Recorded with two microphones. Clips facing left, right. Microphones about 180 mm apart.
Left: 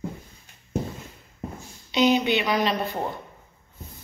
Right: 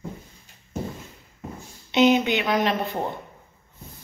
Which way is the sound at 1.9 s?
20° right (ahead or behind).